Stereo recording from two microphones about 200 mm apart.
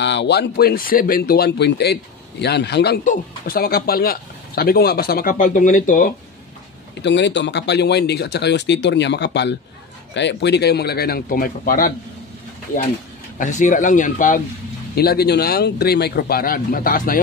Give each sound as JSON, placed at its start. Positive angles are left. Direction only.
{"t": 0.0, "sound": "speech", "side_deg": 60}
{"t": 7.0, "sound": "speech", "side_deg": 60}
{"t": 13.4, "sound": "a man's voice", "side_deg": 40}
{"t": 15.0, "sound": "speech", "side_deg": 50}